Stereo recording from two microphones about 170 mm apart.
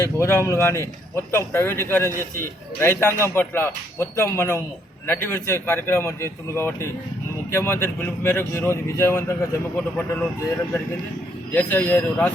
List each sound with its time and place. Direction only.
0.0 s speech: 15° left (ahead or behind)
11.5 s speech: 10° left (ahead or behind)